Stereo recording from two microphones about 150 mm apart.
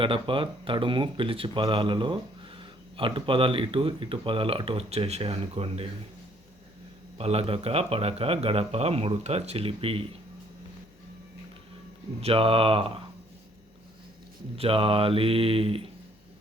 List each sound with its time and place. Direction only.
0.0 s speech: 35° right (ahead or behind)
7.2 s speech: 40° right (ahead or behind)
12.2 s speech: 40° right (ahead or behind)
14.5 s speech: 40° right (ahead or behind)